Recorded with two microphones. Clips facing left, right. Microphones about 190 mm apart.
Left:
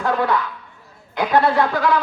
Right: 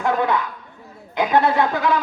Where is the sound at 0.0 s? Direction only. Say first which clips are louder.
Even; 20° right (ahead or behind).